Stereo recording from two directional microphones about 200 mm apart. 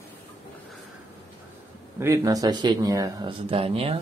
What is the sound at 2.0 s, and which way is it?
Speech, 15° right (ahead or behind).